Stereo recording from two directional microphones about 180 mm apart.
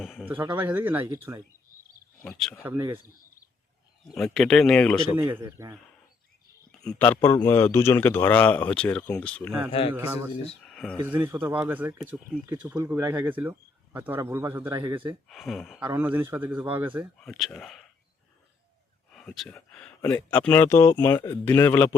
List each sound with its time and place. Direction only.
0.0 s a sound: 5° right (ahead or behind)
0.3 s speech: 10° right (ahead or behind)
2.6 s speech: 15° right (ahead or behind)
4.1 s speech: centre (ahead or behind)
5.4 s speech: 15° right (ahead or behind)
6.7 s a man's voice: 5° left (ahead or behind)
9.9 s speech: 10° right (ahead or behind)
10.6 s a sound: centre (ahead or behind)
11.2 s speech: 15° right (ahead or behind)
15.0 s speech: centre (ahead or behind)
15.9 s speech: 10° right (ahead or behind)
17.2 s speech: centre (ahead or behind)
19.1 s a man's voice: centre (ahead or behind)